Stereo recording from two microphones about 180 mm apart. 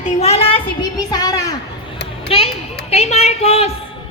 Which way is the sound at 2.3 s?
30° left (ahead or behind).